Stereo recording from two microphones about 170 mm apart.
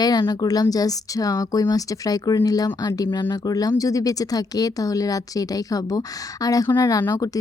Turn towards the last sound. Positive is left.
turn(degrees=20)  # may be behind; listen again after turning